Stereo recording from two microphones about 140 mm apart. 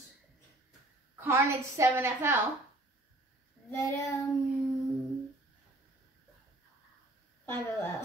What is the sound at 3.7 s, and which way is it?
Child singing, 20° left (ahead or behind).